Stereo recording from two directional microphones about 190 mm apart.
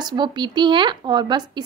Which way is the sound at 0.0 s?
25° right (ahead or behind).